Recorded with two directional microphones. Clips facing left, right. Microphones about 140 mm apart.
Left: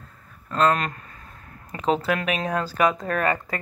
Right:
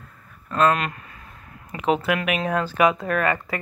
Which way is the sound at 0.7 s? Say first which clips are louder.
Right 1 dB; 35° left (ahead or behind).